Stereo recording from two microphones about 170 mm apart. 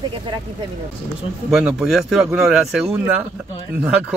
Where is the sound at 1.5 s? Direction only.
5° right (ahead or behind).